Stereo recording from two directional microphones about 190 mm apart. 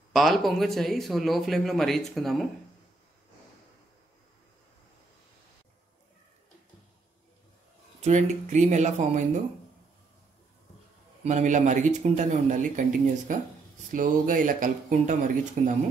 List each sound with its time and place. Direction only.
0.1 s a man's voice: centre (ahead or behind)
8.0 s speech: 40° right (ahead or behind)
11.2 s speech: 40° right (ahead or behind)